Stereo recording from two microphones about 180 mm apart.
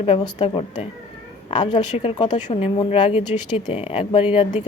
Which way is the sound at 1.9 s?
30° left (ahead or behind).